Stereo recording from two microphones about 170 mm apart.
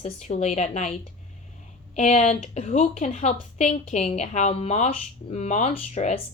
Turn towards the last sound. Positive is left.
turn(degrees=40)  # may be behind; listen again after turning